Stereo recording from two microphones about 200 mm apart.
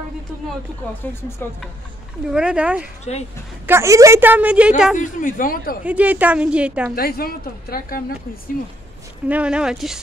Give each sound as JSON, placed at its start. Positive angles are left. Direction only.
{"t": 1.0, "sound": "speech", "side_deg": 10}
{"t": 2.2, "sound": "a woman's voice", "side_deg": -5}
{"t": 4.9, "sound": "a woman's voice", "side_deg": 40}
{"t": 5.9, "sound": "a woman's voice", "side_deg": -5}
{"t": 7.0, "sound": "a woman's voice", "side_deg": 50}
{"t": 9.3, "sound": "a woman's voice", "side_deg": -5}